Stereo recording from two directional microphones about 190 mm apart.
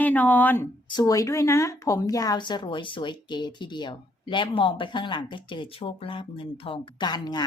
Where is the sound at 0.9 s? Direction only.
20° left (ahead or behind).